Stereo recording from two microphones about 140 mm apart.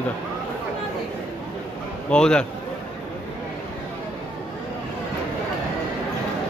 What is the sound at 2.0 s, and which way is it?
Speech, 5° left (ahead or behind).